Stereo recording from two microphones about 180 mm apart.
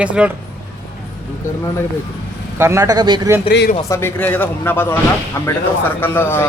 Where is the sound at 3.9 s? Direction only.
10° left (ahead or behind).